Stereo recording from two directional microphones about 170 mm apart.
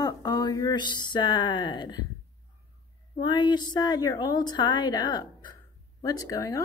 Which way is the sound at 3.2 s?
25° left (ahead or behind).